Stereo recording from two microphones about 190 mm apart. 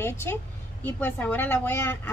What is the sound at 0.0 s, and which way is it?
A child's voice, 10° left (ahead or behind).